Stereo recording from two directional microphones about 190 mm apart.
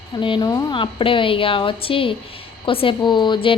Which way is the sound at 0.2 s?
25° left (ahead or behind).